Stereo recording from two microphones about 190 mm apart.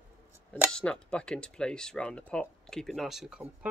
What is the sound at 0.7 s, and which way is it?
Speech, 5° left (ahead or behind).